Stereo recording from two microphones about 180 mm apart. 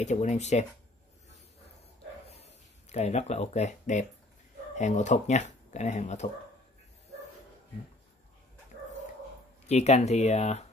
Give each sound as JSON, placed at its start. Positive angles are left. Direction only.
{"t": 0.0, "sound": "speech", "side_deg": 40}
{"t": 2.2, "sound": "a sound", "side_deg": 35}
{"t": 4.7, "sound": "speech", "side_deg": 40}
{"t": 9.7, "sound": "speech", "side_deg": 35}